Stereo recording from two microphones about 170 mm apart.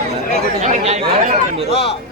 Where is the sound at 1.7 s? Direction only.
35° left (ahead or behind).